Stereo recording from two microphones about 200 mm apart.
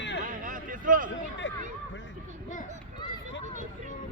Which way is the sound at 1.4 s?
65° left (ahead or behind).